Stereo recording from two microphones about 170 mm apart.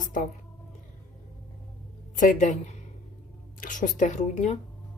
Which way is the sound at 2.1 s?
50° left (ahead or behind).